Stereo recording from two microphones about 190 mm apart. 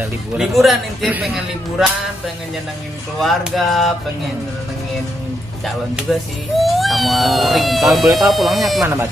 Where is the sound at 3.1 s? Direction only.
Centre (ahead or behind).